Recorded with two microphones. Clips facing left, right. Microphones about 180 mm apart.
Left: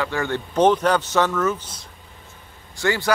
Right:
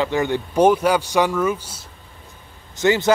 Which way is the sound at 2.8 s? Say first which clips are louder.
Right 5 dB; 20° right (ahead or behind).